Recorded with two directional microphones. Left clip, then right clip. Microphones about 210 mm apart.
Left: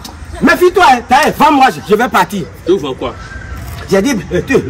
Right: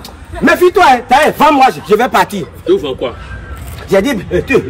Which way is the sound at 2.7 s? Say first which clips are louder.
Right 1 dB; 20° left (ahead or behind).